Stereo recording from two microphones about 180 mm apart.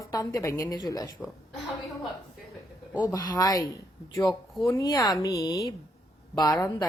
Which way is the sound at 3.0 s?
25° left (ahead or behind).